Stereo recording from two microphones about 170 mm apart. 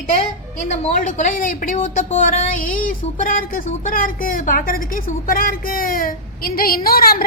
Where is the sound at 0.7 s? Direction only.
45° left (ahead or behind).